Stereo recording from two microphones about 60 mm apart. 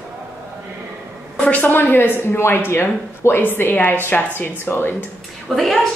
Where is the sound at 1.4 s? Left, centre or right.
Left.